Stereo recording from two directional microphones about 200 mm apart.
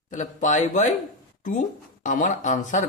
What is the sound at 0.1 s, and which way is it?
Speech, 40° left (ahead or behind).